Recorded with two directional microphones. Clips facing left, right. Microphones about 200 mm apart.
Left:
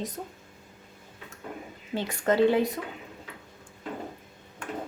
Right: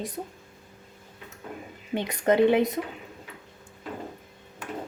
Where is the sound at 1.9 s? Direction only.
20° right (ahead or behind).